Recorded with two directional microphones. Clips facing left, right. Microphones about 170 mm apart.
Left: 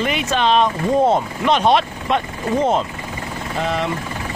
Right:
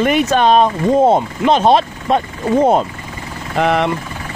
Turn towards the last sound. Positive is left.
turn(degrees=-65)  # may be behind; listen again after turning